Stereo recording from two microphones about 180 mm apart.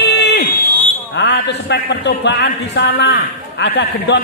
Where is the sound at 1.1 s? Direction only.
70° left (ahead or behind).